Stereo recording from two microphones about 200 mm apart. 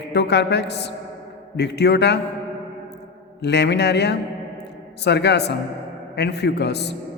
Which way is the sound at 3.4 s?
60° left (ahead or behind).